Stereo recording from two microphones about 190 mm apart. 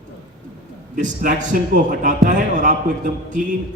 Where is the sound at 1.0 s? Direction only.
40° right (ahead or behind).